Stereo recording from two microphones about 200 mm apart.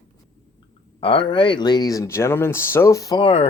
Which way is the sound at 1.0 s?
25° left (ahead or behind).